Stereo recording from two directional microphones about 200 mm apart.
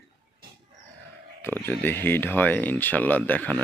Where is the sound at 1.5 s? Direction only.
10° left (ahead or behind).